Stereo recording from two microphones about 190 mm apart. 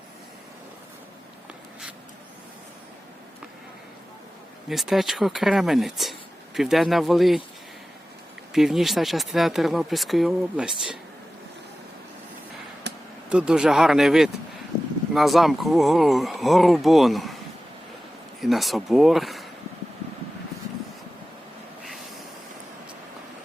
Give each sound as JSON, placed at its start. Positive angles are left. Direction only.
{"t": 4.7, "sound": "speech", "side_deg": 0}
{"t": 8.5, "sound": "speech", "side_deg": 0}
{"t": 12.9, "sound": "a sound", "side_deg": -65}
{"t": 13.3, "sound": "speech", "side_deg": -5}